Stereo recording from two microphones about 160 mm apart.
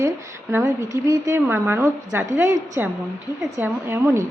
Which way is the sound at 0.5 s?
20° right (ahead or behind).